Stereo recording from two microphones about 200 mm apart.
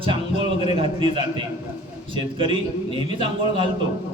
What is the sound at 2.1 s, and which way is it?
A man's voice, 25° right (ahead or behind).